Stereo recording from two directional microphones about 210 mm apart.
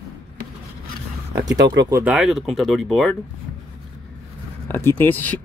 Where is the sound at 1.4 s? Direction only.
20° right (ahead or behind).